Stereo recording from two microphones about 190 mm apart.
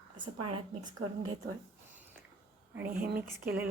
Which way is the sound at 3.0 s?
55° right (ahead or behind).